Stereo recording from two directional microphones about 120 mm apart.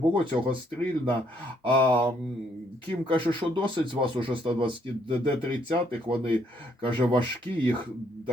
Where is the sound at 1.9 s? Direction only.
45° right (ahead or behind).